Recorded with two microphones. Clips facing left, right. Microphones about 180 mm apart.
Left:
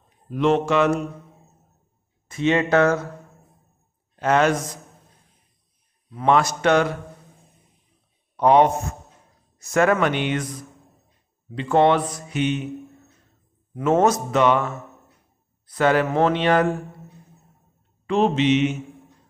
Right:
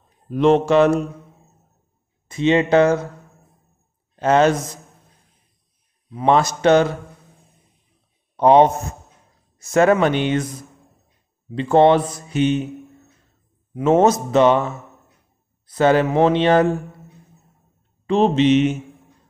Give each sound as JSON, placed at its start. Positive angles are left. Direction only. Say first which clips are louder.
{"t": 0.3, "sound": "speech", "louder": "right 5 dB", "side_deg": -35}
{"t": 2.2, "sound": "speech", "louder": "right 3 dB", "side_deg": -20}
{"t": 4.2, "sound": "speech", "louder": "right 4 dB", "side_deg": -30}
{"t": 6.0, "sound": "speech", "louder": "right 2 dB", "side_deg": -25}
{"t": 8.4, "sound": "speech", "louder": "right 3 dB", "side_deg": -25}
{"t": 11.5, "sound": "speech", "louder": "right 4 dB", "side_deg": -30}
{"t": 13.7, "sound": "speech", "louder": "right 3 dB", "side_deg": -25}
{"t": 18.0, "sound": "speech", "louder": "right 3 dB", "side_deg": -30}